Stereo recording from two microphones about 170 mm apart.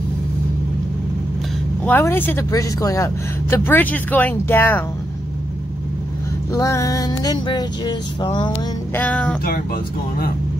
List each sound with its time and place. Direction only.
1.9 s speech: 10° left (ahead or behind)
6.5 s music: 15° left (ahead or behind)
8.9 s speech: 10° left (ahead or behind)